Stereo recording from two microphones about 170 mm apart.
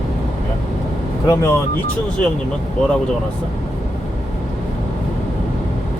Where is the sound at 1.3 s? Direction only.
15° left (ahead or behind).